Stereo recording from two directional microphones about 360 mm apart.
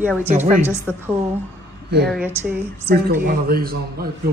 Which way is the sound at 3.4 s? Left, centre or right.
Right.